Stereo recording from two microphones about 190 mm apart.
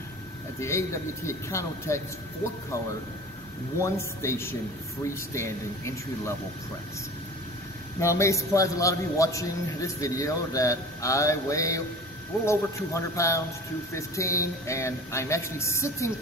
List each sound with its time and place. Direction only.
0.6 s a man's voice: 15° left (ahead or behind)
3.8 s a man's voice: 15° left (ahead or behind)
8.0 s a man's voice: 15° left (ahead or behind)